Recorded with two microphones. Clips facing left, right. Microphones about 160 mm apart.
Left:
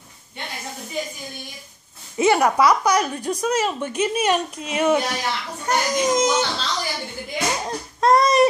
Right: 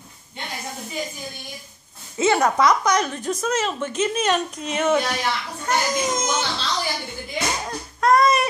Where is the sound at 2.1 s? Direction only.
15° left (ahead or behind).